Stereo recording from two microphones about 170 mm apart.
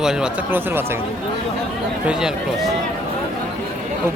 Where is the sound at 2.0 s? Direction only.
5° right (ahead or behind).